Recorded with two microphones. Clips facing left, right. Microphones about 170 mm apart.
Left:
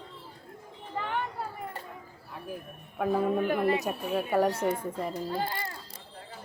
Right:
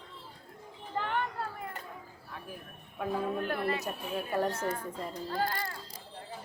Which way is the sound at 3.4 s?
10° left (ahead or behind).